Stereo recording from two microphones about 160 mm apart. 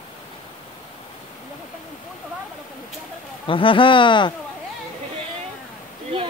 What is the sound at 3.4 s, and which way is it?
Speech, 35° left (ahead or behind).